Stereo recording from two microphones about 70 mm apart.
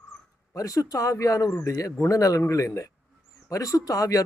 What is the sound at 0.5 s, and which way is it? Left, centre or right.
Speech, left.